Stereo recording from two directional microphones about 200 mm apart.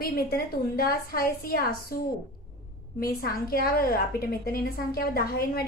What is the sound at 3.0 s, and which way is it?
A woman's voice, 50° left (ahead or behind).